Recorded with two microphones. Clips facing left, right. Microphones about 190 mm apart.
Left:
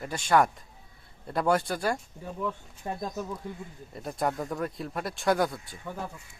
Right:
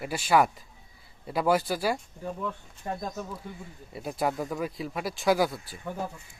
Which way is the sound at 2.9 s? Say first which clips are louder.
Right 1 dB; 15° left (ahead or behind).